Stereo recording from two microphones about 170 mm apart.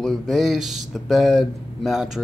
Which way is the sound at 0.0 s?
Centre (ahead or behind).